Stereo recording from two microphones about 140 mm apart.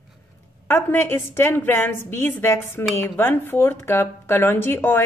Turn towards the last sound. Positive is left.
turn(degrees=15)  # may be behind; listen again after turning